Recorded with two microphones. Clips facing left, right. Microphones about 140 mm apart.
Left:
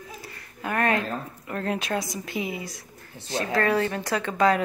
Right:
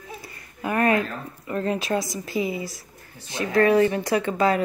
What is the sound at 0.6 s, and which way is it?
Speech, 5° right (ahead or behind).